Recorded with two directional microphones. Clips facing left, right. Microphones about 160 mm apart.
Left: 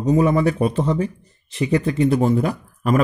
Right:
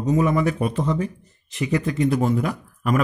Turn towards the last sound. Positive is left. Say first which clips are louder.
# left 3 dB
turn(degrees=35)  # may be behind; listen again after turning